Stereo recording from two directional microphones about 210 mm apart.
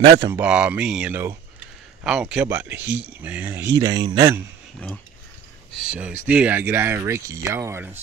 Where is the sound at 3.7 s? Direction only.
20° right (ahead or behind).